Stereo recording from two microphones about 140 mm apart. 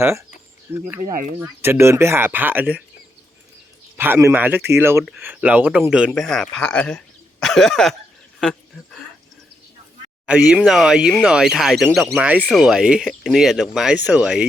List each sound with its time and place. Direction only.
0.0 s speech: 15° right (ahead or behind)
3.9 s a man's voice: 15° right (ahead or behind); by 7.9 s centre (ahead or behind)
8.4 s a sound: 5° left (ahead or behind)
10.2 s a man's voice: 10° right (ahead or behind)